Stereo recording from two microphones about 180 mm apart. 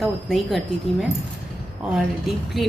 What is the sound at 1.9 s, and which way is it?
Speech, centre (ahead or behind).